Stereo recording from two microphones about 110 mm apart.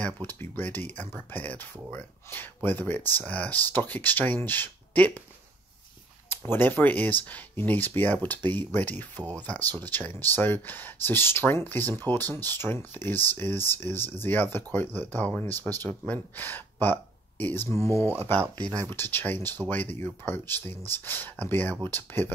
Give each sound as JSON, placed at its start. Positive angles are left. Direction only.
{"t": 0.0, "sound": "speech", "side_deg": 15}
{"t": 6.3, "sound": "speech", "side_deg": 20}